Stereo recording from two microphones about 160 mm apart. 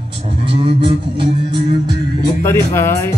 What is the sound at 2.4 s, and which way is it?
Speech, 15° left (ahead or behind).